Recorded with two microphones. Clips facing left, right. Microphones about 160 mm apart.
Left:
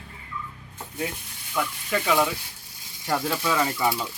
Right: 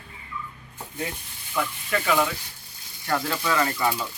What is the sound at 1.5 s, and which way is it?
Speech, 10° left (ahead or behind).